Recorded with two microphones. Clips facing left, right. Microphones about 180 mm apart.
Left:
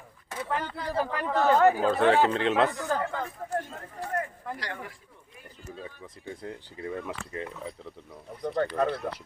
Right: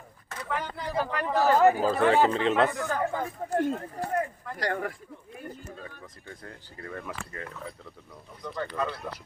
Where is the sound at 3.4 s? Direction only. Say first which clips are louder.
Right 2 dB; 20° right (ahead or behind).